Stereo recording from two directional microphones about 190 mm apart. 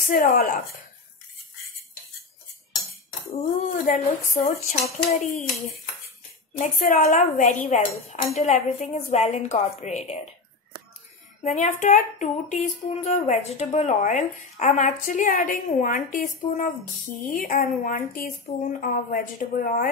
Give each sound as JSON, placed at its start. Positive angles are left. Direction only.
{"t": 0.1, "sound": "a woman's voice", "side_deg": 45}
{"t": 3.3, "sound": "a woman's voice", "side_deg": 45}
{"t": 6.6, "sound": "speech", "side_deg": 40}
{"t": 11.4, "sound": "a woman's voice", "side_deg": 40}